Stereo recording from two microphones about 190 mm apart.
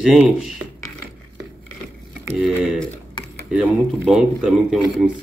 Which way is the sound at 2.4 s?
Centre (ahead or behind).